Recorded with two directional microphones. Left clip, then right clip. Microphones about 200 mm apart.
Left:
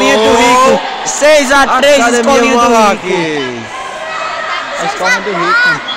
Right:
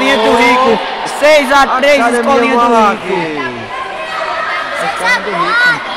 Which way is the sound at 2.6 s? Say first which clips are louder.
Left 1 dB; 45° left (ahead or behind).